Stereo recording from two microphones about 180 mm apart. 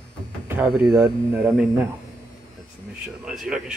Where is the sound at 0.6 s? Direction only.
Centre (ahead or behind).